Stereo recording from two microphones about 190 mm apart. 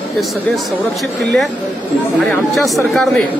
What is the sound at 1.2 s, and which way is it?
Speech, centre (ahead or behind).